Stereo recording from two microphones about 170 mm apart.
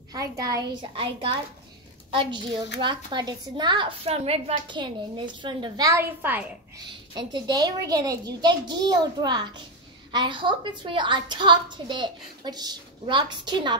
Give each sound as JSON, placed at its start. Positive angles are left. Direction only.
{"t": 0.1, "sound": "a woman's voice", "side_deg": -20}
{"t": 6.9, "sound": "a woman's voice", "side_deg": -25}